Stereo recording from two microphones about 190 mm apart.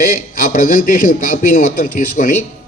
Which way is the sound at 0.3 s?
45° left (ahead or behind).